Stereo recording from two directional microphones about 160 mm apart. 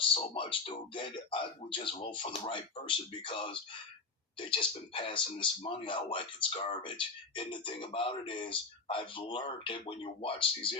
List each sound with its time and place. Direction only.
0.1 s speech: 35° left (ahead or behind)